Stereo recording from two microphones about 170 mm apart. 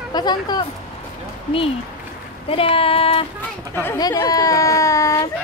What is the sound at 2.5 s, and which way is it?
Child singing, 35° left (ahead or behind).